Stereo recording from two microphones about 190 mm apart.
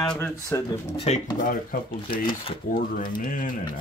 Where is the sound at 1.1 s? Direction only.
35° left (ahead or behind).